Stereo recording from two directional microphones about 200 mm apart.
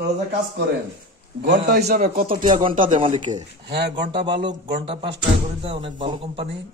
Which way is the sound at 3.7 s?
55° right (ahead or behind).